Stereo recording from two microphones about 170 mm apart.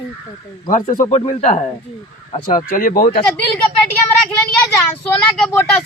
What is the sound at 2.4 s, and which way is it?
Speech, 55° left (ahead or behind).